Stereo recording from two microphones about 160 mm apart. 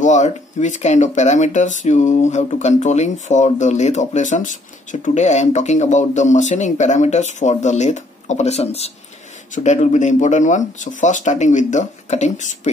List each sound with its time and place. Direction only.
0.0 s speech: 45° left (ahead or behind)